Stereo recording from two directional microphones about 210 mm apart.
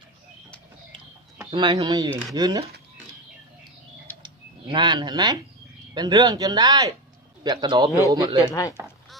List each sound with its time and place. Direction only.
1.5 s speech: 20° right (ahead or behind)
4.7 s speech: 20° right (ahead or behind)
8.4 s speech: 15° left (ahead or behind)